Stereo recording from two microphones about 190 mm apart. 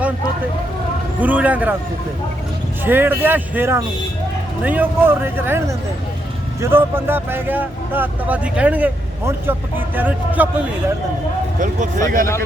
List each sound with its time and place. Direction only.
1.2 s speech: 10° right (ahead or behind)
2.8 s speech: 10° right (ahead or behind)
11.6 s speech: 40° right (ahead or behind)